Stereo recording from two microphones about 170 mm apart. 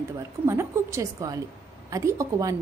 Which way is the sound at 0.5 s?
15° right (ahead or behind).